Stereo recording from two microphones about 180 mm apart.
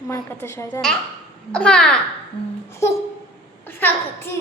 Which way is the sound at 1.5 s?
5° left (ahead or behind).